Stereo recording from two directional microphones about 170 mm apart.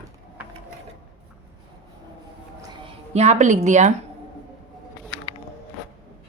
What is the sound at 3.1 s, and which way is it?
Speech, 40° right (ahead or behind).